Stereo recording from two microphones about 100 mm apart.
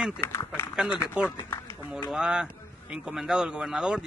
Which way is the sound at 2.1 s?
5° right (ahead or behind).